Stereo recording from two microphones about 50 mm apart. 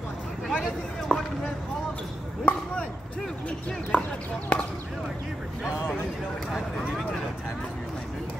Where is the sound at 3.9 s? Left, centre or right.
Left.